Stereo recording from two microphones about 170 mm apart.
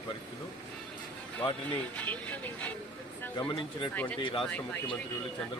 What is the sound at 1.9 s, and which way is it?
Speech, 10° left (ahead or behind).